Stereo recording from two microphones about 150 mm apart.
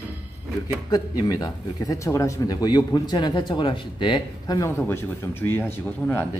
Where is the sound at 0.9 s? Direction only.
25° left (ahead or behind).